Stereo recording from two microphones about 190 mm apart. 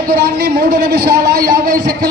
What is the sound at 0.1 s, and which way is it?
A man's voice, 55° right (ahead or behind).